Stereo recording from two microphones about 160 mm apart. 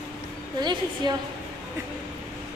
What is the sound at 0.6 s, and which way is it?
Speech, 25° right (ahead or behind).